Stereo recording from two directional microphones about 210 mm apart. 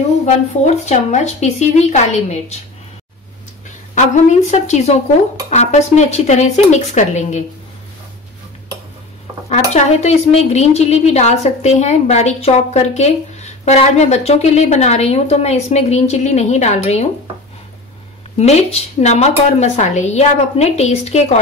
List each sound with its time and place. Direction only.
0.2 s speech: 35° left (ahead or behind)
3.9 s speech: 35° left (ahead or behind)
9.5 s speech: 35° left (ahead or behind)
18.4 s speech: 30° left (ahead or behind)